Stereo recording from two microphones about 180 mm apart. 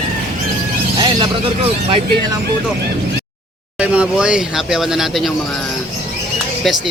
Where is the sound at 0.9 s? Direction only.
25° right (ahead or behind).